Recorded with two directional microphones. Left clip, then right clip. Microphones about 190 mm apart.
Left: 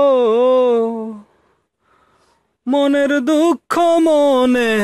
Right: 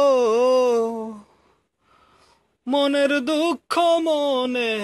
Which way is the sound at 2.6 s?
40° left (ahead or behind).